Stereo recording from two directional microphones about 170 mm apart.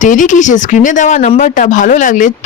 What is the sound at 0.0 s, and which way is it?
Speech, 50° left (ahead or behind).